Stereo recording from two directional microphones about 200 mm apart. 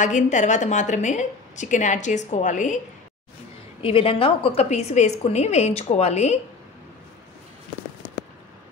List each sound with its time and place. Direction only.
0.0 s a woman's voice: 40° left (ahead or behind)
3.8 s a woman's voice: 30° left (ahead or behind)